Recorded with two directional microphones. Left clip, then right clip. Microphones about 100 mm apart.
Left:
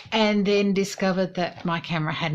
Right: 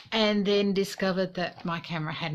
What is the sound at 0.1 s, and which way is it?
Speech, 30° right (ahead or behind).